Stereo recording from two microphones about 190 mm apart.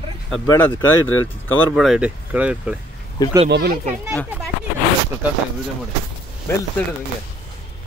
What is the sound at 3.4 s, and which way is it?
Speech, 60° right (ahead or behind).